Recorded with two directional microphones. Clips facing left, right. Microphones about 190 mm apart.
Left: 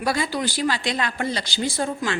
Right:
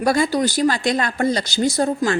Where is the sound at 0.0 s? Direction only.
45° right (ahead or behind).